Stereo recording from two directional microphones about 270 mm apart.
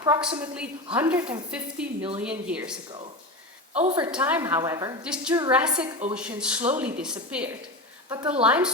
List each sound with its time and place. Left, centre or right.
0.0 s a woman's voice: centre
3.8 s a woman's voice: right
4.0 s a woman's voice: centre
5.8 s a woman's voice: right
6.1 s speech: centre